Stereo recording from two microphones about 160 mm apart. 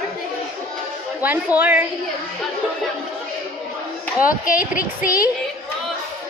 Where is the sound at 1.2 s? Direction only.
10° right (ahead or behind).